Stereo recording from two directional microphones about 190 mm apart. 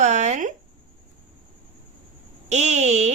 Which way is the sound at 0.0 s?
40° right (ahead or behind).